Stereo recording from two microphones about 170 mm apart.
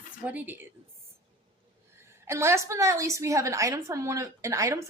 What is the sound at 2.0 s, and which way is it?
A woman's voice, 15° right (ahead or behind).